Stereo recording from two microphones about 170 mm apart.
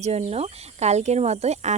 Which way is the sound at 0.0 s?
40° right (ahead or behind).